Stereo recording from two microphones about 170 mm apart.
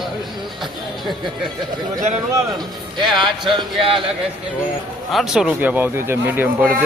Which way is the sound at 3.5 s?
30° right (ahead or behind).